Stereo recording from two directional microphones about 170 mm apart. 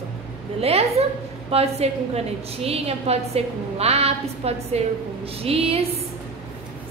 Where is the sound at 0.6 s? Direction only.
35° right (ahead or behind).